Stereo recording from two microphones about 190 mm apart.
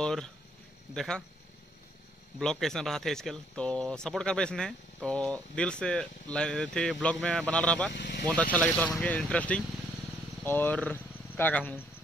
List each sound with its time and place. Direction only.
0.0 s speech: 5° left (ahead or behind)
2.3 s speech: 5° left (ahead or behind)
7.9 s speech: 60° left (ahead or behind)
8.3 s speech: 5° left (ahead or behind)